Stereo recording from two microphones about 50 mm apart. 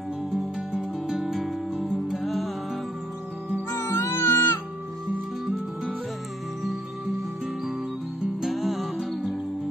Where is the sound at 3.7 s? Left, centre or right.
Left.